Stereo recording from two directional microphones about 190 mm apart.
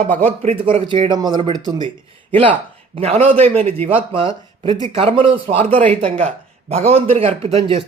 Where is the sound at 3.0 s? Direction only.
35° right (ahead or behind).